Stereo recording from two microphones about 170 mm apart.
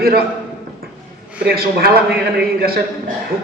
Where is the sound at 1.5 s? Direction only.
65° right (ahead or behind).